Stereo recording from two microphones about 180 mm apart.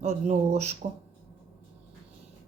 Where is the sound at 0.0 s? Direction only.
35° right (ahead or behind).